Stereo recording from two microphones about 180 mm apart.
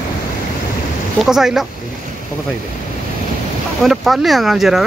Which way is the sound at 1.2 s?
Centre (ahead or behind).